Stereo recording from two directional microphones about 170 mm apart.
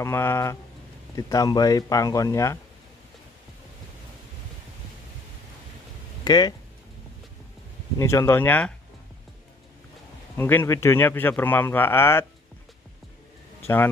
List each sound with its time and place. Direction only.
0.0 s speech: 15° left (ahead or behind)
6.2 s speech: 25° left (ahead or behind)
8.0 s speech: 15° left (ahead or behind)
10.3 s speech: 15° left (ahead or behind)